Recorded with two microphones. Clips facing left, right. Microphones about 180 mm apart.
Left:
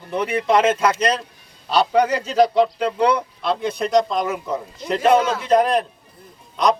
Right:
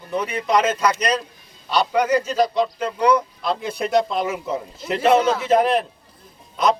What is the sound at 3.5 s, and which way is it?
Speech, centre (ahead or behind).